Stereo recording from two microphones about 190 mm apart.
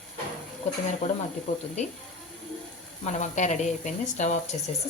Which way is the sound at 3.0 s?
40° left (ahead or behind).